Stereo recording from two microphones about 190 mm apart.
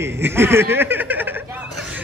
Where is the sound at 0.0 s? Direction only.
10° right (ahead or behind).